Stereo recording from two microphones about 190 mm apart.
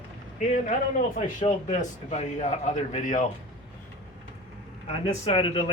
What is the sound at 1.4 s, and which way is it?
A man's voice, 40° left (ahead or behind).